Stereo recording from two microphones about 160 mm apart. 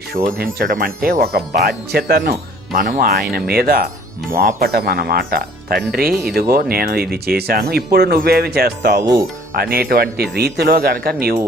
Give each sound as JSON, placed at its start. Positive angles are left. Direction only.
{"t": 0.1, "sound": "speech", "side_deg": -65}
{"t": 2.7, "sound": "speech", "side_deg": -65}
{"t": 9.0, "sound": "speech", "side_deg": -25}
{"t": 9.5, "sound": "speech", "side_deg": -70}